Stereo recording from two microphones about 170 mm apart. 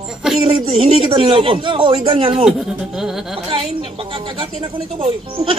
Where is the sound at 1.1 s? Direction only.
30° right (ahead or behind).